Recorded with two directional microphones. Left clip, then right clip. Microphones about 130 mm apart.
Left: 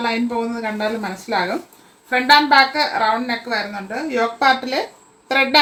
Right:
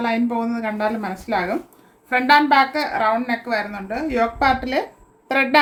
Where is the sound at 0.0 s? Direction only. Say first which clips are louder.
Left 1 dB; 20° right (ahead or behind).